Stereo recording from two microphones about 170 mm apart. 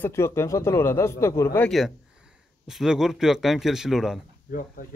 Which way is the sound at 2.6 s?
5° right (ahead or behind).